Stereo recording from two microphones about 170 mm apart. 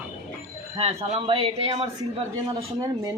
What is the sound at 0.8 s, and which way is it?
Speech, 35° right (ahead or behind).